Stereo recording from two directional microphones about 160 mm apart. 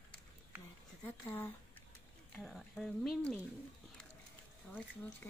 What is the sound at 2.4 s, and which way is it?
Speech, centre (ahead or behind).